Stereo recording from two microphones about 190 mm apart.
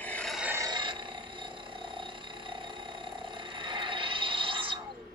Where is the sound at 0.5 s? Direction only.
20° right (ahead or behind).